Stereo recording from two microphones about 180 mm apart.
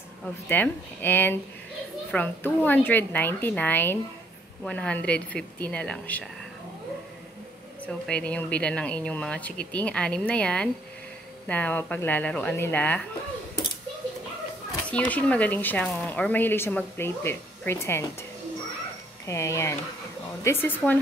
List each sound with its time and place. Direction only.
0.5 s speech: 10° left (ahead or behind)
7.8 s speech: 5° left (ahead or behind)
14.9 s speech: 10° left (ahead or behind)
19.2 s speech: 15° left (ahead or behind)